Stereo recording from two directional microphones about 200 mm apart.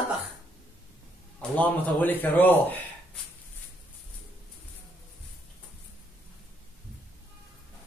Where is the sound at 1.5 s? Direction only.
10° left (ahead or behind).